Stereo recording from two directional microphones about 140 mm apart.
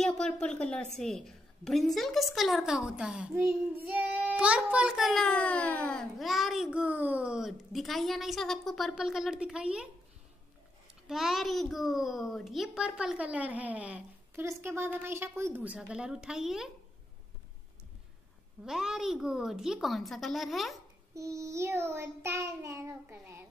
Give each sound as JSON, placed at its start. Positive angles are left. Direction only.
{"t": 0.0, "sound": "a child's voice", "side_deg": 5}
{"t": 11.1, "sound": "a child's voice", "side_deg": 0}
{"t": 18.7, "sound": "a child's voice", "side_deg": -5}
{"t": 21.1, "sound": "child singing", "side_deg": -20}